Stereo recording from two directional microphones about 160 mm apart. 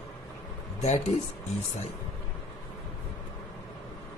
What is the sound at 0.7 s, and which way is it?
Speech, 45° left (ahead or behind).